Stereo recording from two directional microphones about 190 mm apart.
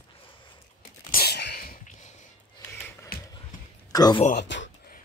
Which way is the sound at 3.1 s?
50° left (ahead or behind).